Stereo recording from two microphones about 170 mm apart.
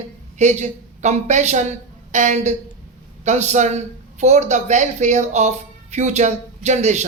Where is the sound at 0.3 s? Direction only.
45° right (ahead or behind).